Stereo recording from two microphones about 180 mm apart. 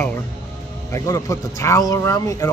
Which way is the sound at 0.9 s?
20° left (ahead or behind).